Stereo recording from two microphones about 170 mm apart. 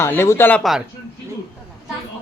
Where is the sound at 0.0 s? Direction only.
15° left (ahead or behind).